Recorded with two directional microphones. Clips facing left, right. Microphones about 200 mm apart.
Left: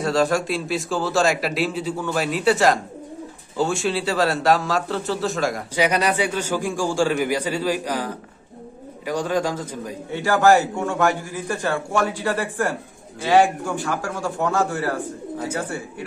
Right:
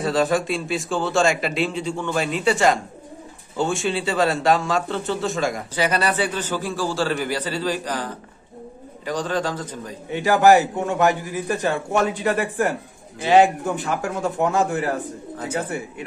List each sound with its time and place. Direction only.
0.0 s a man's voice: centre (ahead or behind)
5.8 s a man's voice: 15° left (ahead or behind)
10.1 s a man's voice: 20° right (ahead or behind)